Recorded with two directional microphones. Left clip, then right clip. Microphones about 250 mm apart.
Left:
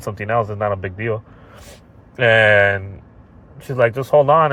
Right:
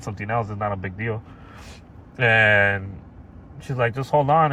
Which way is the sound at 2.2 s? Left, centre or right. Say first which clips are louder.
Left 4 dB; left.